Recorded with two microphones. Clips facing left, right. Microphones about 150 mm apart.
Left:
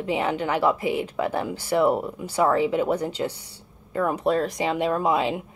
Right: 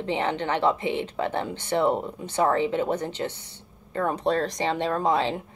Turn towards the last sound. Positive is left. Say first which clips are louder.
# left 1 dB
turn(degrees=10)  # may be behind; listen again after turning